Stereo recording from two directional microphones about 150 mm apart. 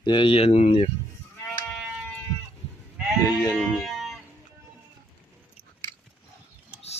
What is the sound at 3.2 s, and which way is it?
Sheep, 20° left (ahead or behind).